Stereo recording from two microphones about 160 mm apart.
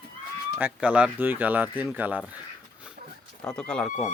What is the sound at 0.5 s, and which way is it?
Speech, 10° right (ahead or behind).